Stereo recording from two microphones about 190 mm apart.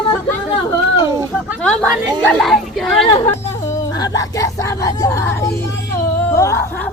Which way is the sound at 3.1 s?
35° left (ahead or behind).